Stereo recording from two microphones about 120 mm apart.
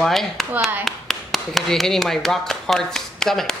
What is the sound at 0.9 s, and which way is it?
Speech, centre (ahead or behind).